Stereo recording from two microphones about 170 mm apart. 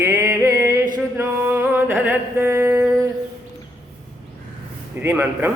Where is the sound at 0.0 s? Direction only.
15° right (ahead or behind).